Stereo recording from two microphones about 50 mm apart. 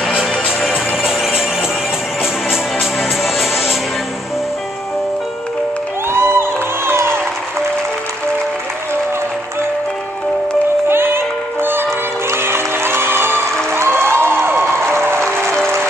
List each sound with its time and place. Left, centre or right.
1.0 s music: centre
6.0 s music: right
10.9 s music: right
13.7 s a sound: right